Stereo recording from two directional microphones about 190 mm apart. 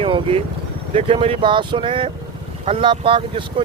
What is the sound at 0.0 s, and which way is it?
Speech, 30° right (ahead or behind).